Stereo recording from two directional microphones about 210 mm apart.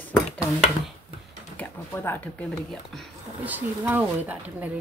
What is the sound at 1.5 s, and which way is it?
Speech, 10° left (ahead or behind).